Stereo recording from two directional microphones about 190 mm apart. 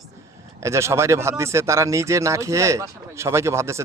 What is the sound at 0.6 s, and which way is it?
Speech, 15° right (ahead or behind).